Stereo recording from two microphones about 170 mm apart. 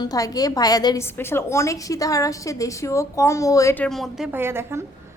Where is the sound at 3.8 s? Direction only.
Centre (ahead or behind).